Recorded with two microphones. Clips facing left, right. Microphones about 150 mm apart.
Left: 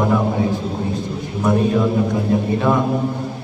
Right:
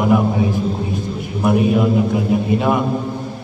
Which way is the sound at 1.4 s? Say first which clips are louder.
Right 2 dB; 15° right (ahead or behind).